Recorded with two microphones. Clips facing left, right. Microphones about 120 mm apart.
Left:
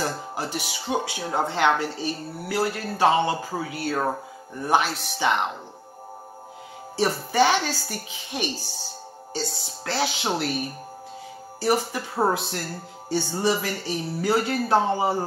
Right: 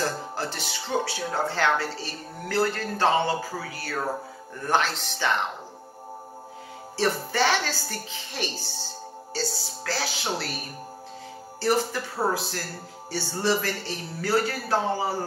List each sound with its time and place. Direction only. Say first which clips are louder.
0.4 s speech: left 2 dB; 10° left (ahead or behind)
3.5 s speech: left 5 dB; 20° left (ahead or behind)
4.6 s speech: left 2 dB; 10° left (ahead or behind)
7.0 s speech: left 3 dB; 15° left (ahead or behind)
11.6 s speech: left 1 dB; 15° left (ahead or behind)